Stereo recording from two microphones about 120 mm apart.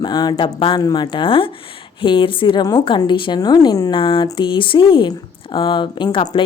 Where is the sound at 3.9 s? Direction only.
45° left (ahead or behind).